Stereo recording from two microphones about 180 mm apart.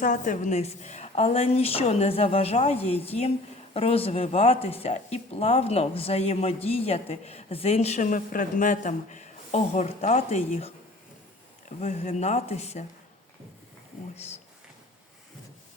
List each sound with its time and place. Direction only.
0.0 s speech: 45° left (ahead or behind)
11.8 s speech: 40° left (ahead or behind)